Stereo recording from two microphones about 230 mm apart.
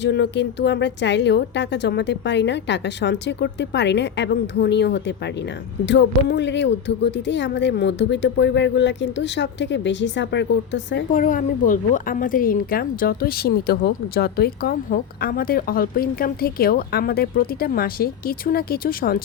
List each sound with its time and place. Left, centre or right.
0.0 s a woman's voice: left
11.1 s a woman's voice: left